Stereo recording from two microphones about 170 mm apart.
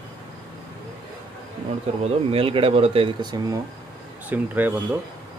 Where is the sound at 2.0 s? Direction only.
35° right (ahead or behind).